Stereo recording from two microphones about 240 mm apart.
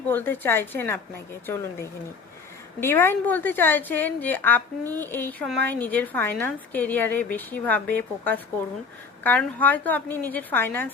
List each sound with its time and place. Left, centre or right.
0.1 s a woman's voice: centre